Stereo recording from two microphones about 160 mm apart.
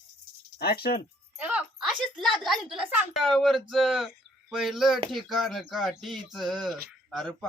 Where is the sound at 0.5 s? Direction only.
75° left (ahead or behind).